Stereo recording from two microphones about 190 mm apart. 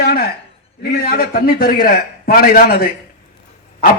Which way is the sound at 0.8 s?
55° left (ahead or behind).